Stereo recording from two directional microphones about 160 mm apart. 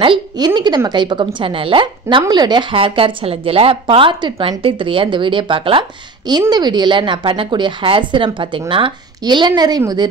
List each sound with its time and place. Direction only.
0.0 s a woman's voice: 30° right (ahead or behind)